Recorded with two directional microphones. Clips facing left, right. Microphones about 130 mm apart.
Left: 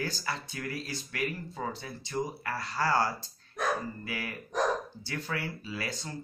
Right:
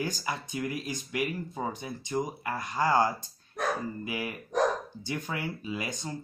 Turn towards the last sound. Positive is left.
turn(degrees=-15)  # may be behind; listen again after turning